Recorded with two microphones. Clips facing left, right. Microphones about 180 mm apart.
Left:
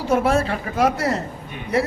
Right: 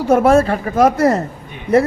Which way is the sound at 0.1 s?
50° right (ahead or behind).